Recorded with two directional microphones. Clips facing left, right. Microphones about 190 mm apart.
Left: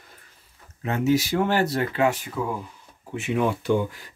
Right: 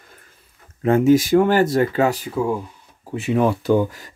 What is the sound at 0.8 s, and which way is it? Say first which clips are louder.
Speech: right 8 dB; 50° right (ahead or behind).